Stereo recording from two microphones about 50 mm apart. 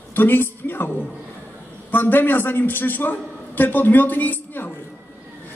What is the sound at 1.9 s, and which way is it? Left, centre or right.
A man's voice, left.